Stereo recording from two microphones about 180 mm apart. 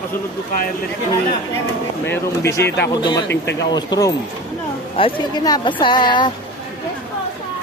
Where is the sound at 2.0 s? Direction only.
15° left (ahead or behind).